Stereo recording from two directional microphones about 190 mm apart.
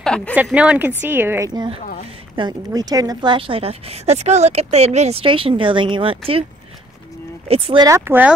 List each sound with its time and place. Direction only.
0.0 s speech: 5° left (ahead or behind)
0.3 s a woman's voice: 5° right (ahead or behind); by 6.4 s 30° right (ahead or behind)
7.4 s speech: 30° right (ahead or behind); by 8.3 s 10° right (ahead or behind)